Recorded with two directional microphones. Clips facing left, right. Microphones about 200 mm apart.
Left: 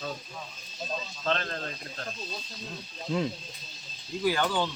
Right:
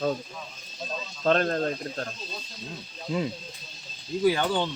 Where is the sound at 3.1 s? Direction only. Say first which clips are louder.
Right 1 dB; 5° right (ahead or behind).